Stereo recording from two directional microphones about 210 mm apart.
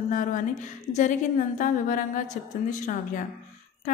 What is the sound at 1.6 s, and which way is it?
A woman's voice, 40° left (ahead or behind).